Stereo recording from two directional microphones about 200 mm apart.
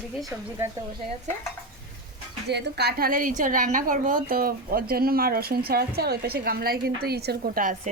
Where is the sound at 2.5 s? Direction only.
55° right (ahead or behind).